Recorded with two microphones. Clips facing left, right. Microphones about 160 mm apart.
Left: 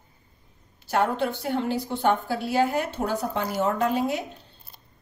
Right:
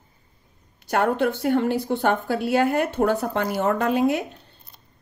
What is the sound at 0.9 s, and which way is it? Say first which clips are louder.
Speech: right 3 dB; 55° right (ahead or behind).